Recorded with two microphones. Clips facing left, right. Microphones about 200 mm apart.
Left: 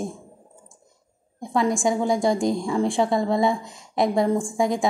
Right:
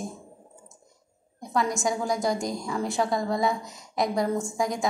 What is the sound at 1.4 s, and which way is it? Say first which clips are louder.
Speech: left 5 dB; 25° left (ahead or behind).